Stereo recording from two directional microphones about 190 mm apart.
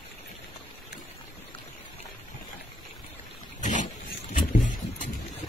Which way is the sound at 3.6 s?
40° left (ahead or behind).